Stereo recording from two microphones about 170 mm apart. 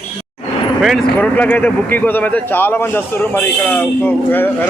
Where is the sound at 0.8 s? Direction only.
Centre (ahead or behind).